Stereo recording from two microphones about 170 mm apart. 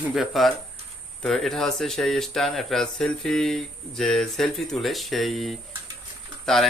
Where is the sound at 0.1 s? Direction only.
Centre (ahead or behind).